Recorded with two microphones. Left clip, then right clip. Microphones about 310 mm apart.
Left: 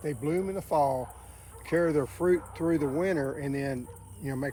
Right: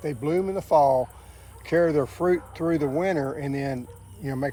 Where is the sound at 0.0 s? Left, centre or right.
Centre.